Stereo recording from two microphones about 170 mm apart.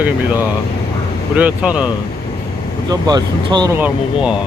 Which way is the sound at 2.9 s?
25° right (ahead or behind).